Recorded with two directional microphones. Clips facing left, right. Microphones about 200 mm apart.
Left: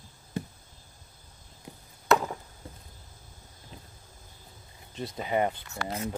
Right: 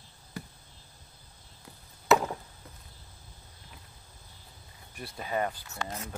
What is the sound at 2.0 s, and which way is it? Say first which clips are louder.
Chop: even; 5° right (ahead or behind).